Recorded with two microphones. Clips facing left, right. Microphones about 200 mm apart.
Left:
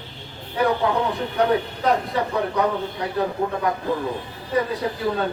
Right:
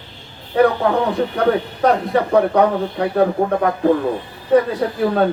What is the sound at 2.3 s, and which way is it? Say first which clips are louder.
Speech: right 9 dB; 60° right (ahead or behind).